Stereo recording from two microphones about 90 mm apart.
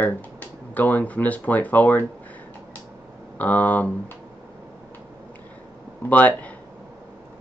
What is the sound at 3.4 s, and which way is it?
Speech, 15° left (ahead or behind).